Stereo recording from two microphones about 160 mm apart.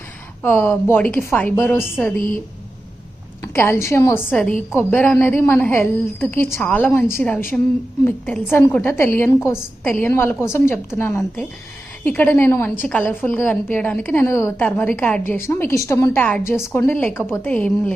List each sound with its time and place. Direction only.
0.4 s a woman's voice: 10° left (ahead or behind)
3.4 s a woman's voice: 15° left (ahead or behind)